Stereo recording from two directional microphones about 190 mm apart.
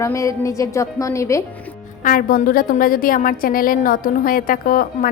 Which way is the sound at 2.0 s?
45° left (ahead or behind).